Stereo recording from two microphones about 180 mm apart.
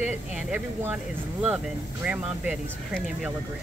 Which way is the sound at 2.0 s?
5° right (ahead or behind).